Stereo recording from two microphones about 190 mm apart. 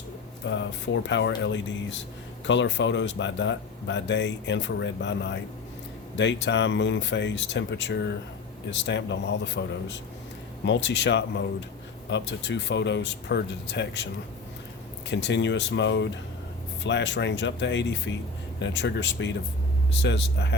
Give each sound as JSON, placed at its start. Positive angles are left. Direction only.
{"t": 0.4, "sound": "speech", "side_deg": 70}
{"t": 15.1, "sound": "speech", "side_deg": 70}